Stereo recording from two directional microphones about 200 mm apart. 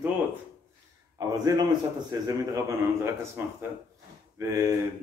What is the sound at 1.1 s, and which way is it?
A man's voice, 20° right (ahead or behind).